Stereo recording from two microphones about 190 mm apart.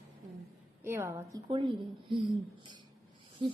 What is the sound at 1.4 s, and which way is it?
Speech, 25° right (ahead or behind).